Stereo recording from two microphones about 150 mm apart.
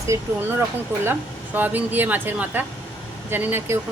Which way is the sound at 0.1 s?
20° right (ahead or behind).